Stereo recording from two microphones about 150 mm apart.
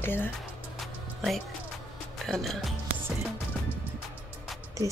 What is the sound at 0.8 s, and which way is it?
Music, centre (ahead or behind).